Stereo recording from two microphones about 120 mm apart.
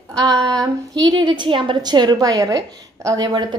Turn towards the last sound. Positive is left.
turn(degrees=-35)  # may be behind; listen again after turning